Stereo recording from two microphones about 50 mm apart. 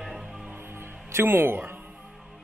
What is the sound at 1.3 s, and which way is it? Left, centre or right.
Speech, right.